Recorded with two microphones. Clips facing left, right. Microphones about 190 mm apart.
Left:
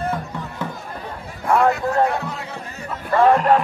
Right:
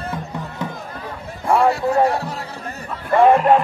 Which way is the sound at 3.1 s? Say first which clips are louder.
Right 2 dB; 15° right (ahead or behind).